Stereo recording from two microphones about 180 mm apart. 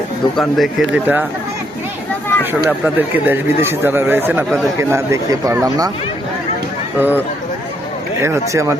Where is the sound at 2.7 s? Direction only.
10° right (ahead or behind).